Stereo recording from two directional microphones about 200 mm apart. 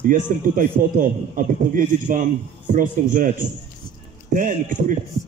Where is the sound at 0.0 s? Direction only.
40° right (ahead or behind).